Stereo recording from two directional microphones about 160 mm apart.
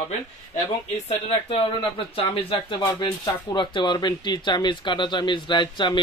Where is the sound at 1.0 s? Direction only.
40° left (ahead or behind).